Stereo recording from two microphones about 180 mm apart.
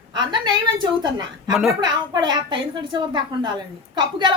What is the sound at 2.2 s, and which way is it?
Speech, 25° right (ahead or behind).